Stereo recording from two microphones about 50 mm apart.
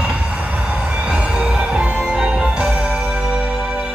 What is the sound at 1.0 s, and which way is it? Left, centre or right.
Music, right.